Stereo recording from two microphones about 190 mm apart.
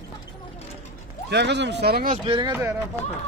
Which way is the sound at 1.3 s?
65° right (ahead or behind).